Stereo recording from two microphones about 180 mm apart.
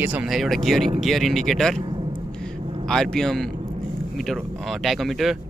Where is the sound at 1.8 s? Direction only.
25° right (ahead or behind).